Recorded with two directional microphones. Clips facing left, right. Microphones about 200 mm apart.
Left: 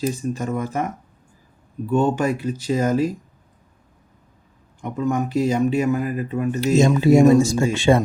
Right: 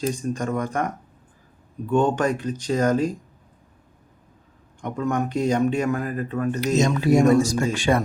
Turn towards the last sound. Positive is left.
turn(degrees=25)  # may be behind; listen again after turning